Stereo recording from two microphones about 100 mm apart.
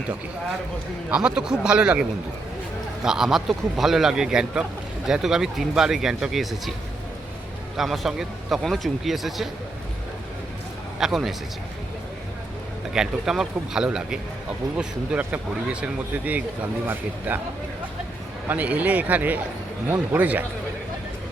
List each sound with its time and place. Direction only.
1.1 s speech: 10° right (ahead or behind)
7.8 s speech: centre (ahead or behind)
11.0 s speech: centre (ahead or behind)
12.9 s speech: 5° right (ahead or behind)
18.4 s speech: 15° right (ahead or behind)